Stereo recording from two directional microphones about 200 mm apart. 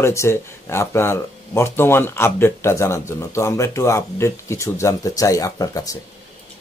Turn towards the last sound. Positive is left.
turn(degrees=15)  # may be behind; listen again after turning